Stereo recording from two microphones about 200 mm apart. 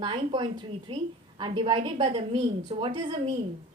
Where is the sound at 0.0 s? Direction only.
25° right (ahead or behind).